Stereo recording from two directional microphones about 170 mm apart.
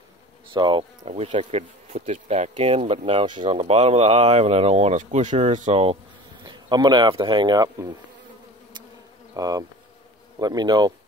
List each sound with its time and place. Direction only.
0.5 s speech: 30° right (ahead or behind)
9.3 s bee: 20° right (ahead or behind)
10.4 s speech: 25° right (ahead or behind)